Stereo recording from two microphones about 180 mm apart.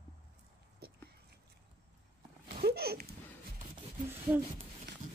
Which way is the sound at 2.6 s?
60° right (ahead or behind).